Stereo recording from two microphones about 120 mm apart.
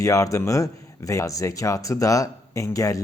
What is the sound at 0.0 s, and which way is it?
Speech, 25° left (ahead or behind).